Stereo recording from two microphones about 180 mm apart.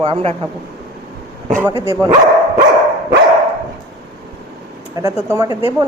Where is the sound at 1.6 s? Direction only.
15° right (ahead or behind).